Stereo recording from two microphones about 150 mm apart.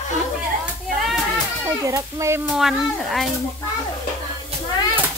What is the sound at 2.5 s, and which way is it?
Speech, centre (ahead or behind).